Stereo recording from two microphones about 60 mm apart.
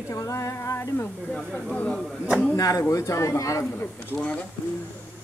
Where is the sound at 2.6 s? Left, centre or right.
Left.